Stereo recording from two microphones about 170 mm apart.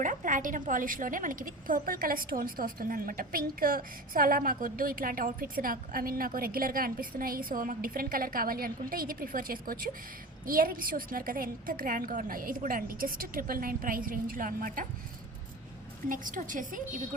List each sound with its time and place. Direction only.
0.0 s a woman's voice: 50° right (ahead or behind)
16.0 s a woman's voice: 50° right (ahead or behind)